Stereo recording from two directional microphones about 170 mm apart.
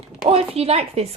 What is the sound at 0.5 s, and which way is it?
Speech, 35° right (ahead or behind).